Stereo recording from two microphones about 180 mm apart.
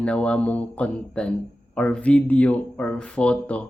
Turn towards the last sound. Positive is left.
turn(degrees=5)  # may be behind; listen again after turning